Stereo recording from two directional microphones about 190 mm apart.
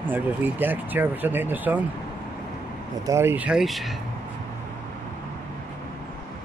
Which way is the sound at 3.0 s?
15° right (ahead or behind).